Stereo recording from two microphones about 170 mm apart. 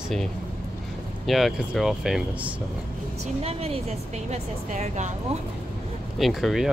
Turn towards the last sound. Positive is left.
turn(degrees=0)  # may be behind; listen again after turning